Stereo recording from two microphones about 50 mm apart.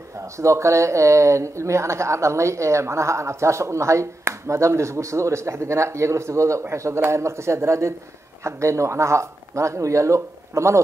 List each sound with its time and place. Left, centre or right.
0.4 s speech: right
6.7 s speech: right
8.5 s speech: right